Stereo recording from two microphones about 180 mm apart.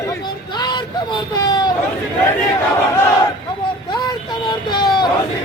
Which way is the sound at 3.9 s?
25° left (ahead or behind).